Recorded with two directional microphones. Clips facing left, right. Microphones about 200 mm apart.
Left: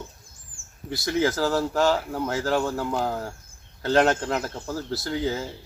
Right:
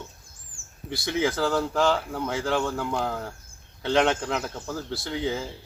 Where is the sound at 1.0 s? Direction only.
Centre (ahead or behind).